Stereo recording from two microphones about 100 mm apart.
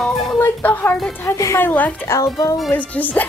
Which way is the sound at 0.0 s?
Centre (ahead or behind).